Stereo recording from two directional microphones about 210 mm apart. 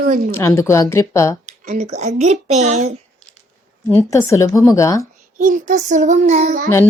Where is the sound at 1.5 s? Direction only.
35° right (ahead or behind).